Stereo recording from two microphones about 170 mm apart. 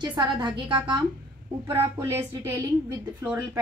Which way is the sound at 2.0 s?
15° right (ahead or behind).